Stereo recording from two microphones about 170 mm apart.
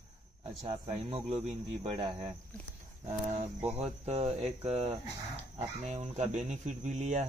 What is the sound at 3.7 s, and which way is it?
Speech, 40° right (ahead or behind).